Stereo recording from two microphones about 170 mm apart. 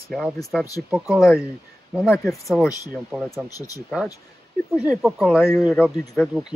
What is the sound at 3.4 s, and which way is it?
Speech, 20° left (ahead or behind).